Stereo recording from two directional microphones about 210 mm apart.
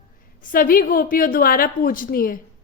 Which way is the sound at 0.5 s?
45° left (ahead or behind).